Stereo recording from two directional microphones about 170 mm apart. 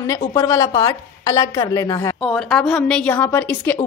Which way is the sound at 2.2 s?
5° left (ahead or behind).